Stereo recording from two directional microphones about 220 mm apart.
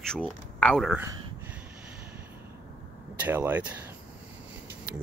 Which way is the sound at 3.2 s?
10° right (ahead or behind).